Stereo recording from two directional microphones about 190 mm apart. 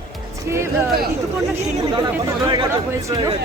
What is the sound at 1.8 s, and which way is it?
Speech, 25° right (ahead or behind).